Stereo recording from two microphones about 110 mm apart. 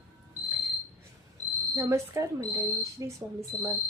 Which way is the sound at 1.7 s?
30° right (ahead or behind).